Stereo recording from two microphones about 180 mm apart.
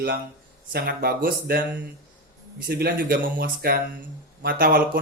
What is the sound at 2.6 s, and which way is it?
Speech, 60° right (ahead or behind).